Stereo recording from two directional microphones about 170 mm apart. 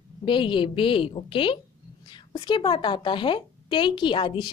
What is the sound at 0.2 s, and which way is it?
A woman's voice, 30° left (ahead or behind).